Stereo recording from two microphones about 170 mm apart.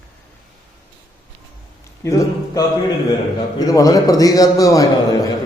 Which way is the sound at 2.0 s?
20° left (ahead or behind).